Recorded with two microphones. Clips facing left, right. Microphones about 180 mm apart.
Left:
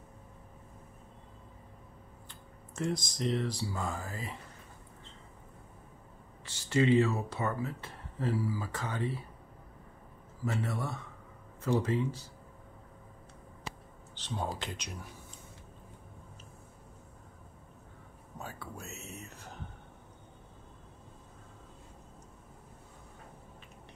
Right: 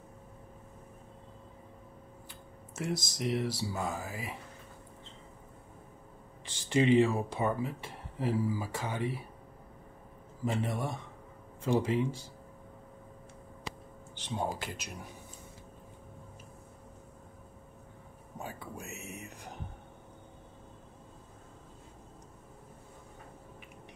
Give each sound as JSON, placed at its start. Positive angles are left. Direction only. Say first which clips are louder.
{"t": 2.2, "sound": "a sound", "louder": "right 3 dB", "side_deg": -10}
{"t": 3.7, "sound": "speech", "louder": "right 1 dB", "side_deg": -5}
{"t": 6.7, "sound": "speech", "louder": "right 1 dB", "side_deg": -15}
{"t": 10.4, "sound": "speech", "louder": "right 2 dB", "side_deg": -15}
{"t": 14.2, "sound": "speech", "louder": "right 2 dB", "side_deg": -10}
{"t": 18.4, "sound": "speech", "louder": "right 2 dB", "side_deg": -15}